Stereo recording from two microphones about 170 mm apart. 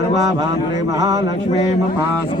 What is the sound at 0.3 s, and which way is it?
Mantra, 20° right (ahead or behind).